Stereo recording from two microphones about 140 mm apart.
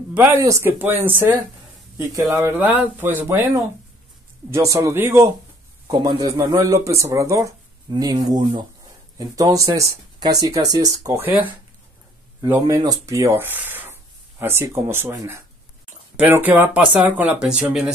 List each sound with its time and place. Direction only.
0.4 s speech: 20° right (ahead or behind)
5.9 s speech: 30° right (ahead or behind)
11.1 s speech: 10° right (ahead or behind)